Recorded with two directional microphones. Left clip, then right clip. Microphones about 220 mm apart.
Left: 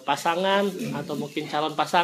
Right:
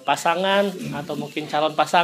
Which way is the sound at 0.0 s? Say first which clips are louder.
Right 3 dB; 25° right (ahead or behind).